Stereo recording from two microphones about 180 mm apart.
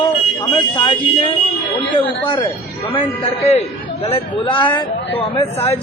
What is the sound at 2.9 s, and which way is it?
A man's voice, 35° left (ahead or behind).